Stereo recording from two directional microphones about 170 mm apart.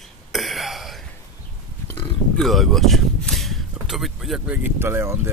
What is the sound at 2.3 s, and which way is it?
Speech, centre (ahead or behind).